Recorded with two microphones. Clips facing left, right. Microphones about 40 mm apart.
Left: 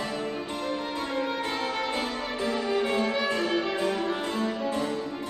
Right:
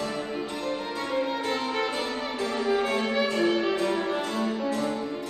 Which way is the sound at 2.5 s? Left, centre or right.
Centre.